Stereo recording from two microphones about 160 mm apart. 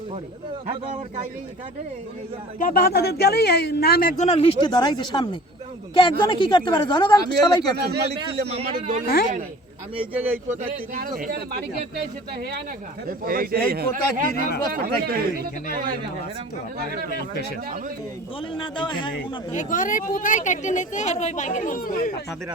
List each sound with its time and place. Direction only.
2.6 s a man's voice: 65° left (ahead or behind)
4.2 s speech: 40° left (ahead or behind)
7.8 s speech: 90° right
8.4 s a man's voice: 40° right (ahead or behind)
10.1 s speech: 10° right (ahead or behind)
10.7 s a man's voice: 65° right (ahead or behind); by 11.6 s 80° right
13.1 s a man's voice: 65° right (ahead or behind)
18.5 s speech: 30° left (ahead or behind)
19.5 s speech: 55° left (ahead or behind)